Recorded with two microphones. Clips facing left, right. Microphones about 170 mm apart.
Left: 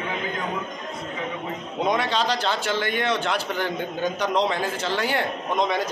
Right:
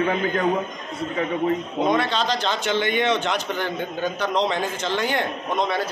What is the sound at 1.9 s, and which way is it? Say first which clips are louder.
A man's voice: right 1 dB; 10° left (ahead or behind).